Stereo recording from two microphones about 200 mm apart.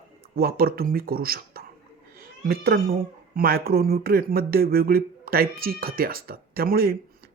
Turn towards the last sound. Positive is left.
turn(degrees=-50)  # may be behind; listen again after turning